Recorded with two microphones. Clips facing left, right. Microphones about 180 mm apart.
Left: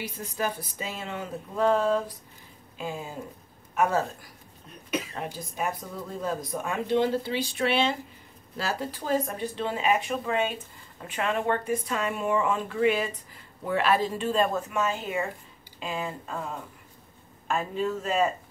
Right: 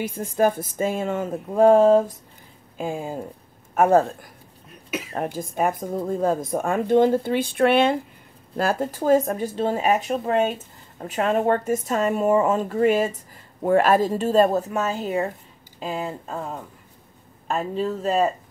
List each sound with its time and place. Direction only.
0.0 s speech: 50° right (ahead or behind)
17.5 s speech: 35° right (ahead or behind)